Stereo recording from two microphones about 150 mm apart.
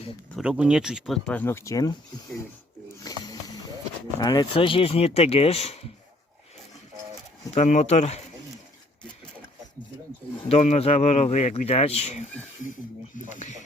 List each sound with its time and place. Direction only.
0.3 s speech: 5° right (ahead or behind)
1.4 s speech: 15° left (ahead or behind)
3.0 s snake: 25° left (ahead or behind)
4.2 s speech: 30° left (ahead or behind); by 5.9 s 45° left (ahead or behind)
7.5 s speech: 50° left (ahead or behind)
10.5 s speech: 45° left (ahead or behind)
13.1 s music: 55° left (ahead or behind)